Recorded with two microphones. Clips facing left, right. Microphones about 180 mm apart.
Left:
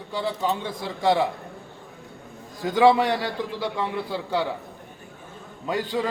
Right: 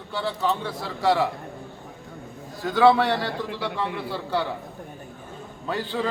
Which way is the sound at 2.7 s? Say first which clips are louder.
Even; 15° left (ahead or behind).